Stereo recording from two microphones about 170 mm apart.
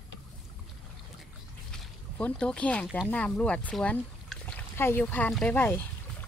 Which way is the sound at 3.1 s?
5° left (ahead or behind).